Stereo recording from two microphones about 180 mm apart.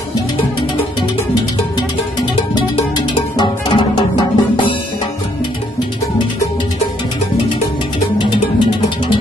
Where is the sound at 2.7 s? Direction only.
25° left (ahead or behind).